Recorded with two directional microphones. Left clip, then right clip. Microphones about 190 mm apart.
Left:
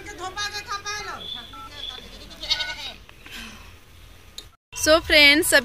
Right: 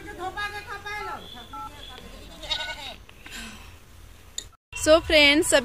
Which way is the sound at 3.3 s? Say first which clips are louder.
Left 1 dB; 5° right (ahead or behind).